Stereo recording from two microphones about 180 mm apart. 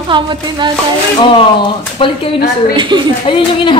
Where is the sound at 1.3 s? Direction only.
30° left (ahead or behind).